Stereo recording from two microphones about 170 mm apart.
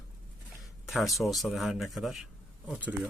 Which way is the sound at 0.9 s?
Centre (ahead or behind).